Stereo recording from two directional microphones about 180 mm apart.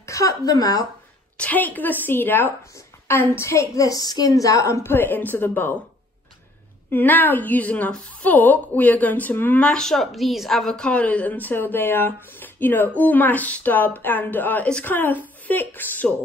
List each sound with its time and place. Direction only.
0.0 s a woman's voice: 15° left (ahead or behind)
1.4 s a woman's voice: 10° left (ahead or behind)
6.9 s a woman's voice: 10° left (ahead or behind)